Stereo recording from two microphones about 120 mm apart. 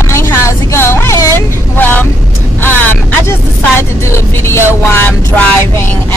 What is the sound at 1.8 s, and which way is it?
Vehicle, 15° left (ahead or behind).